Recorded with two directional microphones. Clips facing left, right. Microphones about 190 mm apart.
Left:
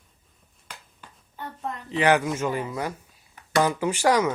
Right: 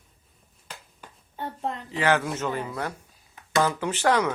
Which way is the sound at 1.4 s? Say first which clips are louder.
Right 3 dB; 30° right (ahead or behind).